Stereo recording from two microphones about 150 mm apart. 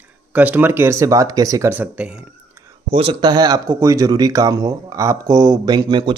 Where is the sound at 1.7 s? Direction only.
10° right (ahead or behind).